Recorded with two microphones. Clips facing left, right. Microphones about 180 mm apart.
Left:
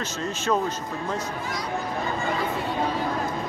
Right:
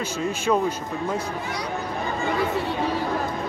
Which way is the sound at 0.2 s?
10° right (ahead or behind).